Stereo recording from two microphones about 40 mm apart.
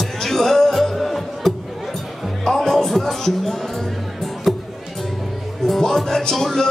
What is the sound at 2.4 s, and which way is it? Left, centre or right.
Music, centre.